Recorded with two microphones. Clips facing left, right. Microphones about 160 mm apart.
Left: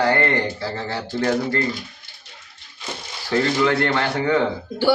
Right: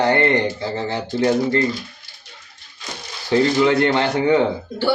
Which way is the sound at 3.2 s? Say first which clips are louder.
Right 3 dB; 20° right (ahead or behind).